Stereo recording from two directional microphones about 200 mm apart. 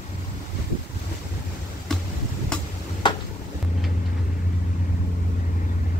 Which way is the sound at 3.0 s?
20° left (ahead or behind).